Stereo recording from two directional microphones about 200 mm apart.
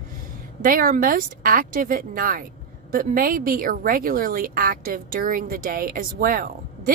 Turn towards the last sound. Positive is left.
turn(degrees=-45)  # may be behind; listen again after turning